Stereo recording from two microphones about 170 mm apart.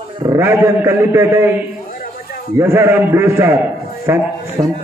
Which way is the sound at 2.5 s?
15° right (ahead or behind).